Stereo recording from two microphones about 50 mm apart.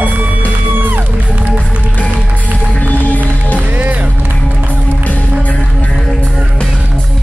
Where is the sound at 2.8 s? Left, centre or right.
Left.